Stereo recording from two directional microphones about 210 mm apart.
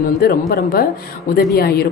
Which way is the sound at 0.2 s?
45° left (ahead or behind).